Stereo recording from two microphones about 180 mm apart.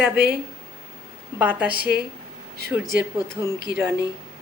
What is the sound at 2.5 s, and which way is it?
Speech, 65° right (ahead or behind).